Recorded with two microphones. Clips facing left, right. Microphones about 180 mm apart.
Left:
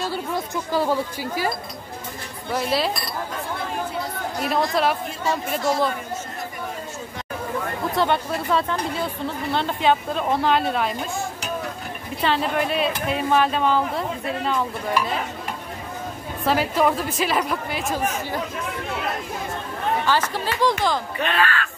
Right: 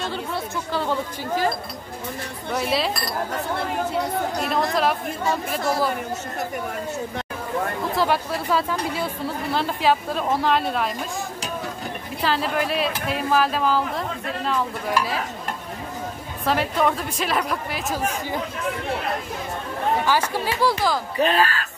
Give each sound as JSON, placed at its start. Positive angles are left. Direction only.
{"t": 0.7, "sound": "speech", "side_deg": 10}
{"t": 2.5, "sound": "speech", "side_deg": 0}
{"t": 4.7, "sound": "speech", "side_deg": 0}
{"t": 7.9, "sound": "speech", "side_deg": 0}
{"t": 12.2, "sound": "speech", "side_deg": 0}
{"t": 16.4, "sound": "speech", "side_deg": 0}
{"t": 20.1, "sound": "speech", "side_deg": -10}
{"t": 21.2, "sound": "speech", "side_deg": -35}